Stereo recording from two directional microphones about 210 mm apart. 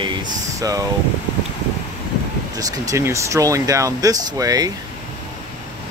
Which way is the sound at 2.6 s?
15° right (ahead or behind).